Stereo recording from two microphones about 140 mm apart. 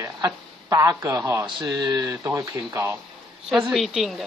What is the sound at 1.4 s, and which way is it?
Speech, 30° right (ahead or behind).